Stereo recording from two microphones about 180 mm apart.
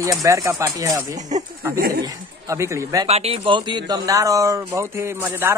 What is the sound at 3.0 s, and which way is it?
Speech, 35° right (ahead or behind).